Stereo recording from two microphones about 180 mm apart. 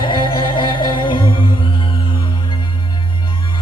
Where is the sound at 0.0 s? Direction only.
25° left (ahead or behind).